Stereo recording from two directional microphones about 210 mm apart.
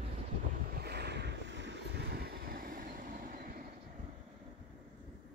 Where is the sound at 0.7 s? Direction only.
50° right (ahead or behind).